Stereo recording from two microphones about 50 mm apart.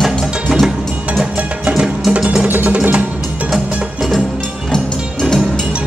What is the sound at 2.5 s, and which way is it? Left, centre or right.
Music, right.